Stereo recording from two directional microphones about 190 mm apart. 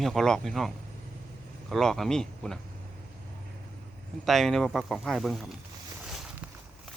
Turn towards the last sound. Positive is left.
turn(degrees=-5)  # may be behind; listen again after turning